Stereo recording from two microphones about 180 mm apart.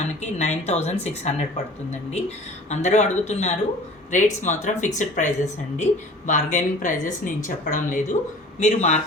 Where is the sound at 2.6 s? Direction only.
40° left (ahead or behind).